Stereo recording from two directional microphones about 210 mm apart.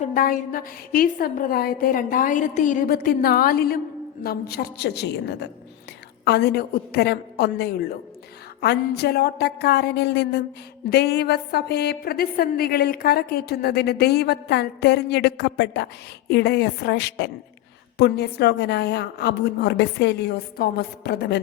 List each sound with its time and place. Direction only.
0.0 s a woman's voice: 40° left (ahead or behind)